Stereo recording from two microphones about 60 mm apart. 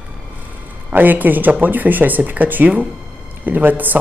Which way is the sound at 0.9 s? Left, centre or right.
Right.